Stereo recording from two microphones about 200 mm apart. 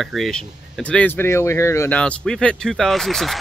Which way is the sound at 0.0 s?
Centre (ahead or behind).